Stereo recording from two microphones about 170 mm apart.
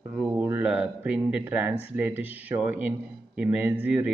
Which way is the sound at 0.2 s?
10° right (ahead or behind).